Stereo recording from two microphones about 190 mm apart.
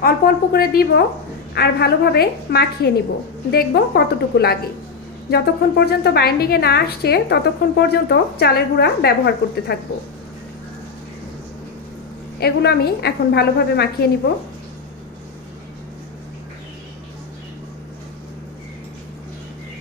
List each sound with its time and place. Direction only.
0.0 s a woman's voice: 50° left (ahead or behind)
12.4 s a woman's voice: 55° left (ahead or behind)